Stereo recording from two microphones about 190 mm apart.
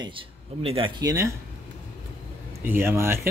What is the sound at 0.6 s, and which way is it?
Speech, 30° right (ahead or behind).